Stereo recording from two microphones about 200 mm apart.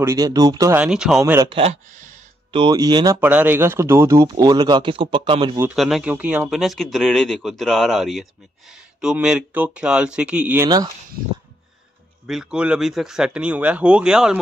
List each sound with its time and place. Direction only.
0.0 s speech: 15° right (ahead or behind)
0.8 s speech: 5° right (ahead or behind)
1.5 s speech: 30° right (ahead or behind)
2.5 s speech: 20° right (ahead or behind)
5.8 s speech: centre (ahead or behind)
12.3 s speech: 5° right (ahead or behind)